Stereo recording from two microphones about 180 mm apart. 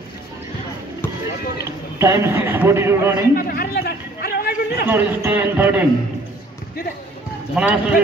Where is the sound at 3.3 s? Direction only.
55° left (ahead or behind).